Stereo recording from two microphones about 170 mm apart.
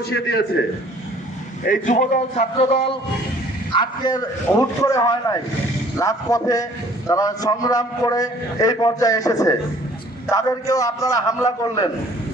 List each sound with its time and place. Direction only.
0.1 s a man's voice: 70° left (ahead or behind)
1.6 s a man's voice: 50° left (ahead or behind)
3.8 s a man's voice: 25° left (ahead or behind)